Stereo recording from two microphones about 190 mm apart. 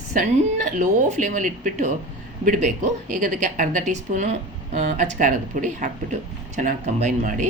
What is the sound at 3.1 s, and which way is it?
A woman's voice, 40° right (ahead or behind).